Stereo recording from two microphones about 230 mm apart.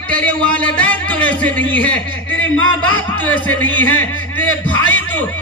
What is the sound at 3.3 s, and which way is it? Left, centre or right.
Speech, centre.